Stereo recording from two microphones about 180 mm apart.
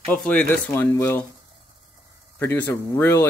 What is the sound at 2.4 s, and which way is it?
Speech, 10° left (ahead or behind).